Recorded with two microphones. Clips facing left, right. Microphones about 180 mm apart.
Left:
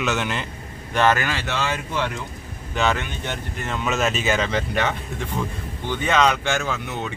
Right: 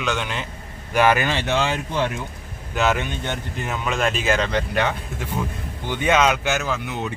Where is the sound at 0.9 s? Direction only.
10° right (ahead or behind).